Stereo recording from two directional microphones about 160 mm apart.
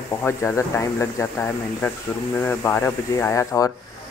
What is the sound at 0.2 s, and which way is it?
Speech, 15° left (ahead or behind).